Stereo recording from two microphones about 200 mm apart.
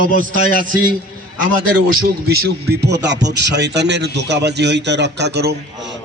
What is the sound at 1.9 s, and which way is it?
A man's voice, 55° right (ahead or behind).